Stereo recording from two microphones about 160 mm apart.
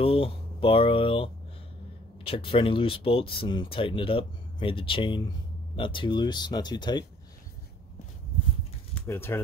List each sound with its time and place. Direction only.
0.0 s speech: 35° left (ahead or behind)
8.9 s speech: 15° left (ahead or behind)